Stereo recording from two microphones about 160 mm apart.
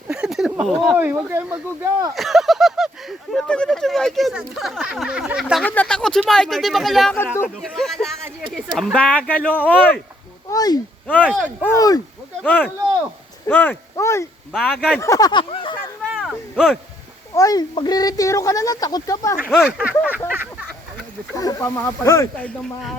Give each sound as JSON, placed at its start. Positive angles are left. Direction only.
{"t": 0.1, "sound": "a sound", "side_deg": -5}
{"t": 0.6, "sound": "speech", "side_deg": -5}
{"t": 5.6, "sound": "speech", "side_deg": 10}
{"t": 10.5, "sound": "speech", "side_deg": 25}
{"t": 12.4, "sound": "speech", "side_deg": 10}
{"t": 14.5, "sound": "speech", "side_deg": 0}
{"t": 14.9, "sound": "speech", "side_deg": 20}
{"t": 16.1, "sound": "a sound", "side_deg": 0}
{"t": 17.3, "sound": "speech", "side_deg": 20}
{"t": 19.4, "sound": "speech", "side_deg": -5}
{"t": 21.3, "sound": "speech", "side_deg": 20}